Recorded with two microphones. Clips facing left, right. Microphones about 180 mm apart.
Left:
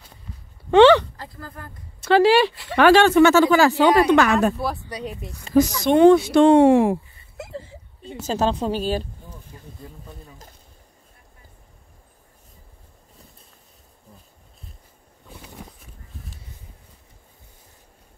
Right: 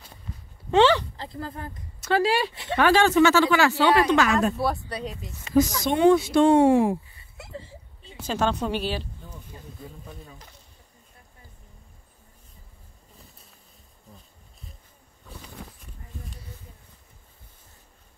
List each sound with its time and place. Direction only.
0.7 s speech: 65° left (ahead or behind)
1.1 s a sound: 25° right (ahead or behind)
2.0 s speech: 80° left; by 3.7 s 40° left (ahead or behind)
4.1 s speech: 60° left (ahead or behind)
4.6 s speech: centre (ahead or behind)
5.5 s speech: 35° left (ahead or behind)
5.9 s speech: 70° left (ahead or behind)
8.3 s speech: 35° left (ahead or behind)
9.5 s a sound: 25° right (ahead or behind)